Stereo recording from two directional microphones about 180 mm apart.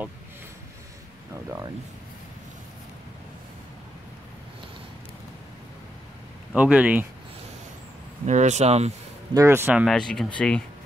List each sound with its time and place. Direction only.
6.5 s speech: 10° right (ahead or behind)
8.3 s speech: 40° right (ahead or behind)
9.3 s speech: 15° right (ahead or behind); by 10.6 s 5° left (ahead or behind)